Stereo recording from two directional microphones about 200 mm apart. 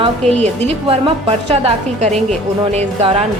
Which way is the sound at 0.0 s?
30° right (ahead or behind).